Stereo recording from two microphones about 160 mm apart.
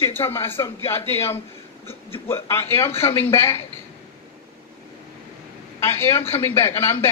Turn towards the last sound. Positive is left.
turn(degrees=15)  # may be behind; listen again after turning